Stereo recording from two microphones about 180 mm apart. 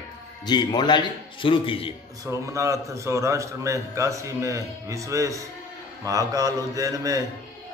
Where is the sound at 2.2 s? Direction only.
15° right (ahead or behind).